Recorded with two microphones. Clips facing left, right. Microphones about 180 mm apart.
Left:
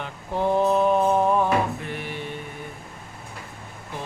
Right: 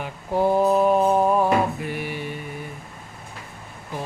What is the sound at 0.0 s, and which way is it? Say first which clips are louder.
Mantra: right 4 dB; 10° right (ahead or behind).